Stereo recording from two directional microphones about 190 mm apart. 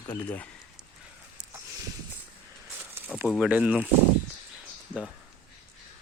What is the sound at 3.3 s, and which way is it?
Speech, 5° right (ahead or behind).